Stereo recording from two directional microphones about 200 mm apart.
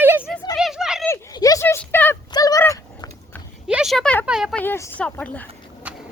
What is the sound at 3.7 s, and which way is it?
Speech, centre (ahead or behind).